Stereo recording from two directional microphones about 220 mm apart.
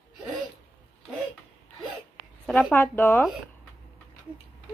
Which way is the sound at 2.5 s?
5° left (ahead or behind).